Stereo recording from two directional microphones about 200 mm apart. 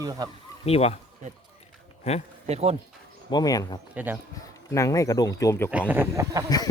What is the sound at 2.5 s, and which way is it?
Speech, 30° right (ahead or behind).